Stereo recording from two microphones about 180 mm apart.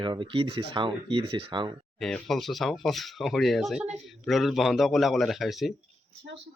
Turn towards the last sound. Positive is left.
turn(degrees=0)  # may be behind; listen again after turning